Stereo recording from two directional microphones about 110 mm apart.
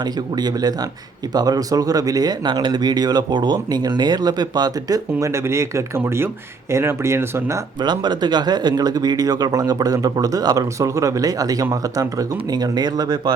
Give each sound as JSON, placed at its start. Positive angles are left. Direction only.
{"t": 0.0, "sound": "speech", "side_deg": -40}
{"t": 7.8, "sound": "speech", "side_deg": -40}